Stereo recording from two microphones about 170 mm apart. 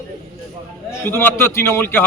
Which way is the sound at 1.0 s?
10° left (ahead or behind).